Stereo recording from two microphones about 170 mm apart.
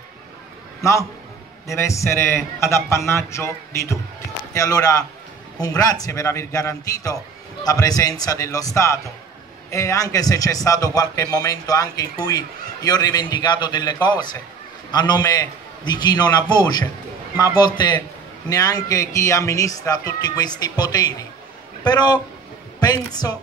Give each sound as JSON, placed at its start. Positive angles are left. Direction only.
{"t": 1.7, "sound": "a man's voice", "side_deg": 15}